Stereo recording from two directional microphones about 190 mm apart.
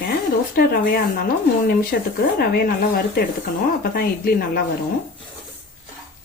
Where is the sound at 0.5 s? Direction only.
55° left (ahead or behind).